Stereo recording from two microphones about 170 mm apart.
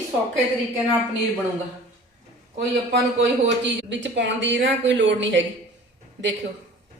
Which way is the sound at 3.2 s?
90° right.